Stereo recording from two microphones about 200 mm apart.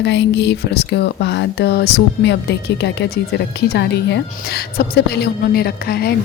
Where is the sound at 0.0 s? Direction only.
60° left (ahead or behind).